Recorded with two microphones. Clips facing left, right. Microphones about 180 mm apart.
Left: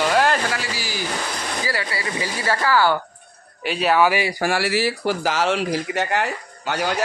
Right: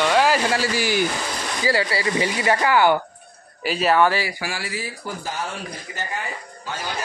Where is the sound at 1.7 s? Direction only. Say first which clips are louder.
Right 9 dB; 25° right (ahead or behind).